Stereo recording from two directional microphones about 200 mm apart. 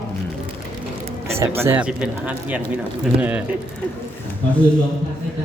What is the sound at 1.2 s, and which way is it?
Speech, 15° right (ahead or behind).